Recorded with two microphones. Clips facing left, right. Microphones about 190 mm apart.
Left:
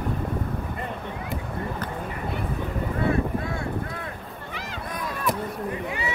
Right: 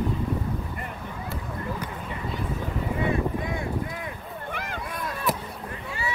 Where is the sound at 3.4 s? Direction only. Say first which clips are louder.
Even; 15° right (ahead or behind).